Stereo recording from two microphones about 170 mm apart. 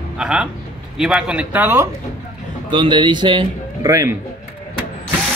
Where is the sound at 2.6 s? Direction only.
30° right (ahead or behind).